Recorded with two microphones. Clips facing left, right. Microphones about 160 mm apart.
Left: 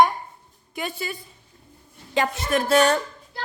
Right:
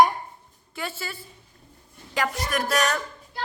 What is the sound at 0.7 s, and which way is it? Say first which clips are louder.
A woman's voice: left 3 dB; 20° left (ahead or behind).